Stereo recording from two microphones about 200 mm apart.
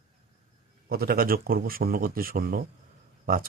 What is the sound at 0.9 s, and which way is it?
Speech, 50° right (ahead or behind).